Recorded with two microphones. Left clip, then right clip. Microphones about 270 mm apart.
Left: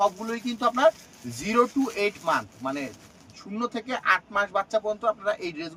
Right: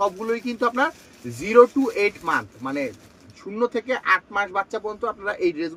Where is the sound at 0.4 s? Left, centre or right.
Left.